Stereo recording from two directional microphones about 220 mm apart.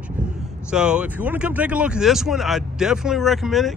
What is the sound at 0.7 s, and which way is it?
Speech, 5° right (ahead or behind).